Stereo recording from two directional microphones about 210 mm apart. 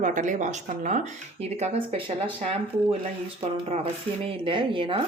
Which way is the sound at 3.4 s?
30° right (ahead or behind).